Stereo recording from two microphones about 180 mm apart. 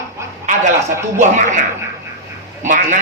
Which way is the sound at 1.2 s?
45° right (ahead or behind).